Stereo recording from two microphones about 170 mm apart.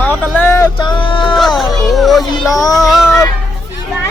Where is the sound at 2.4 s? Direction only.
20° left (ahead or behind).